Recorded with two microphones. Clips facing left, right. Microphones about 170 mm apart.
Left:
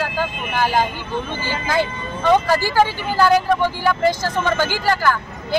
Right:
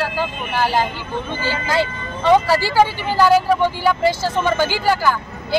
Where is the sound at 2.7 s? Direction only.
10° right (ahead or behind).